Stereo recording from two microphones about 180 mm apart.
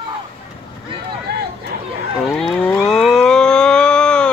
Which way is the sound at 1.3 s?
60° right (ahead or behind).